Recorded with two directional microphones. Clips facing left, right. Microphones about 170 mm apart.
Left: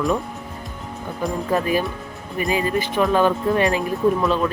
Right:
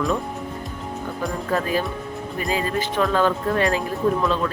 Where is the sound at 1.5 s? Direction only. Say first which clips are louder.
Left 2 dB; 15° left (ahead or behind).